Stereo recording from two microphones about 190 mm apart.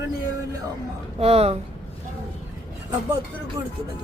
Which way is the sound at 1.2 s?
30° right (ahead or behind).